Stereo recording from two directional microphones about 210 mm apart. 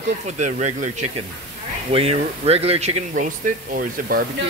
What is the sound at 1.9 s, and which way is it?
Speech, 25° right (ahead or behind).